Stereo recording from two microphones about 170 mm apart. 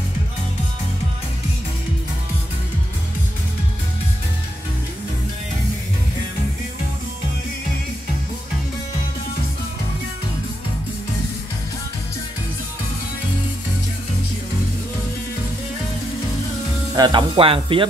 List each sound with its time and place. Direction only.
16.9 s sizzle: 25° right (ahead or behind)